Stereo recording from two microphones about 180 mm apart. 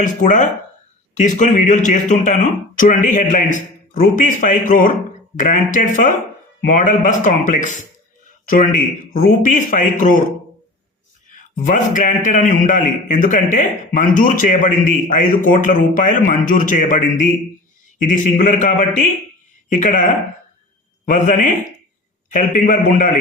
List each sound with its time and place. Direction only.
0.0 s a man's voice: 45° left (ahead or behind)
11.3 s a man's voice: 45° left (ahead or behind)
18.0 s a man's voice: 45° left (ahead or behind)